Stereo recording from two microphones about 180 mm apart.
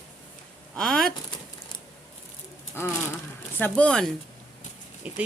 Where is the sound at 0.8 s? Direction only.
5° left (ahead or behind).